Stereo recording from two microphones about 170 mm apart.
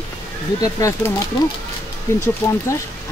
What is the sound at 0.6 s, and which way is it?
Speech, 20° left (ahead or behind).